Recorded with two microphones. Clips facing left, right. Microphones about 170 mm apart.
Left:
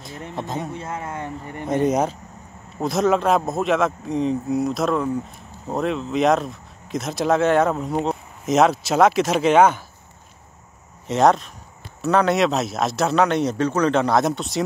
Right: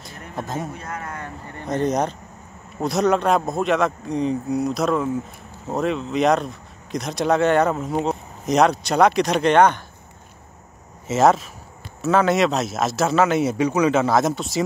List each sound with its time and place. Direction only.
0.4 s speech: centre (ahead or behind)
0.7 s speech: 25° left (ahead or behind); by 9.8 s 5° left (ahead or behind)
11.1 s speech: 5° right (ahead or behind)